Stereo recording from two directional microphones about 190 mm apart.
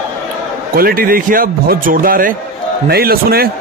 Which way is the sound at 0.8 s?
50° right (ahead or behind).